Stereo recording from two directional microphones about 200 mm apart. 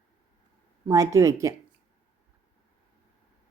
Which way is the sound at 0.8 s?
15° right (ahead or behind).